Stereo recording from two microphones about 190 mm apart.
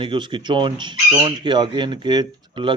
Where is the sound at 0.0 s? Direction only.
25° right (ahead or behind).